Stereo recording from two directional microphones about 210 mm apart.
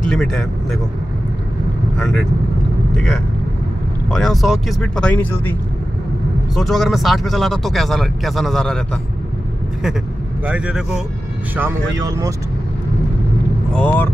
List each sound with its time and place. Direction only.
0.1 s speech: centre (ahead or behind)
2.0 s speech: centre (ahead or behind)
4.1 s speech: centre (ahead or behind)
10.4 s speech: 5° right (ahead or behind)
13.7 s speech: 10° left (ahead or behind)